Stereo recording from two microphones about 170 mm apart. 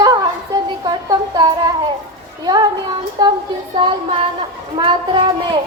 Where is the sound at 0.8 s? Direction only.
20° right (ahead or behind).